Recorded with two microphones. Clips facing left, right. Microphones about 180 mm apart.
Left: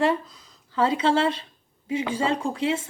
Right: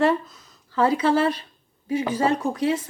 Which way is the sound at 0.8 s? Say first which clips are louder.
Right 2 dB; 25° left (ahead or behind).